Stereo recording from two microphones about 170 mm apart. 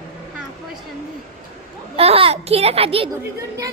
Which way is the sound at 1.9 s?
35° right (ahead or behind).